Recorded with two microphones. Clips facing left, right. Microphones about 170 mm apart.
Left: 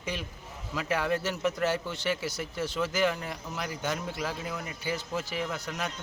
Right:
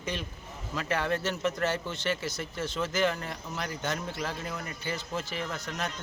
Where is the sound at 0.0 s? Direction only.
10° left (ahead or behind).